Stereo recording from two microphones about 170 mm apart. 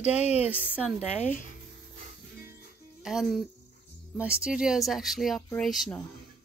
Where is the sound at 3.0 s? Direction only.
5° right (ahead or behind).